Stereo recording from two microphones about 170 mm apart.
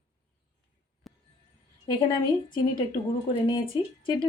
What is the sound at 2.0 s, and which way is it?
Speech, 25° left (ahead or behind).